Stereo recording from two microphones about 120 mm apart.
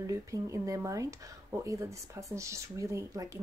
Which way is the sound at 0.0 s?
25° right (ahead or behind).